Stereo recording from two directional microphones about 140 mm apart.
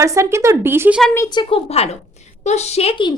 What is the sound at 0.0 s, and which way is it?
Speech, 20° right (ahead or behind).